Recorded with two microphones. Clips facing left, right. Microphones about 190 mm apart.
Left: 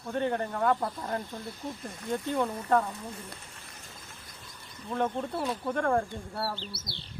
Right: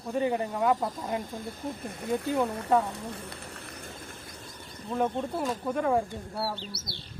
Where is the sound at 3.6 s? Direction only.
60° right (ahead or behind).